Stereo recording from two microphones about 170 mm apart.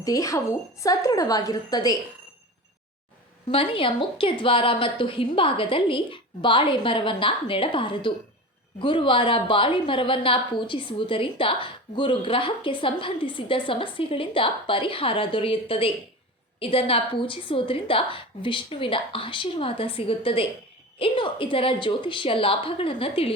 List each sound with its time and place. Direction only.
0.0 s a woman's voice: 20° left (ahead or behind)
3.5 s a woman's voice: 30° left (ahead or behind)